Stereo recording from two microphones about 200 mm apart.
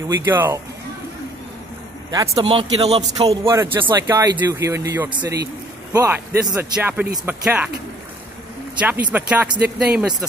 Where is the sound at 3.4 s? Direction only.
15° right (ahead or behind).